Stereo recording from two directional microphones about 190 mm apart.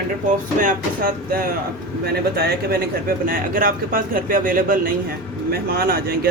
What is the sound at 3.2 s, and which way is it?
Speech, 50° right (ahead or behind).